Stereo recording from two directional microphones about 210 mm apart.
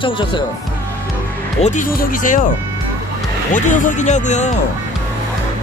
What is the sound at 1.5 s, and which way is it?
Speech, 35° left (ahead or behind).